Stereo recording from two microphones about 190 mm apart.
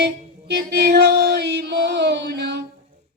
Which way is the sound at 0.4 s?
60° right (ahead or behind).